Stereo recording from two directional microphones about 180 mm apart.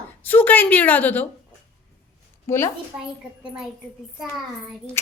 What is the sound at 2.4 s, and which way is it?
Speech, 15° left (ahead or behind).